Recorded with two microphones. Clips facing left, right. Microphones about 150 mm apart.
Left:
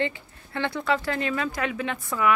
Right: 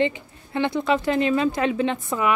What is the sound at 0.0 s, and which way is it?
Speech, 20° right (ahead or behind).